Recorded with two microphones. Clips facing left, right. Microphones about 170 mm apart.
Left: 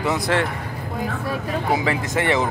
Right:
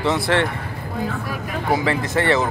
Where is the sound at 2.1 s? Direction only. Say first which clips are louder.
Right 2 dB; 15° left (ahead or behind).